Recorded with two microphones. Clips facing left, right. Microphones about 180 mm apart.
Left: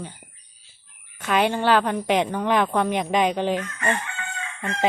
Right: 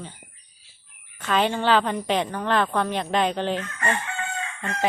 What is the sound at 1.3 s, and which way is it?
Speech, 10° left (ahead or behind).